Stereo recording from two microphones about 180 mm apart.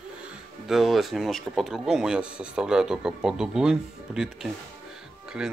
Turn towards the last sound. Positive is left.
turn(degrees=-5)  # may be behind; listen again after turning